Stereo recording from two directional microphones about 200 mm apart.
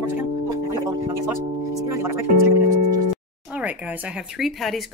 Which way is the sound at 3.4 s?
5° right (ahead or behind).